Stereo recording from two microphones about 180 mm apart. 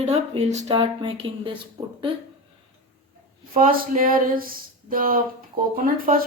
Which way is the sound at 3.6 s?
50° right (ahead or behind).